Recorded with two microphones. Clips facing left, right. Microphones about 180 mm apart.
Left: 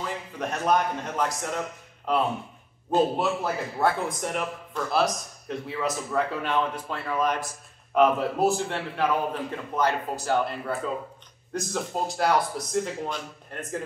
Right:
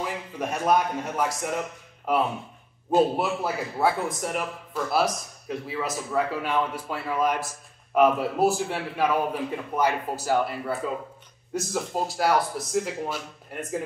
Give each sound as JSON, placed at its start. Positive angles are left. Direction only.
{"t": 0.0, "sound": "a man's voice", "side_deg": -10}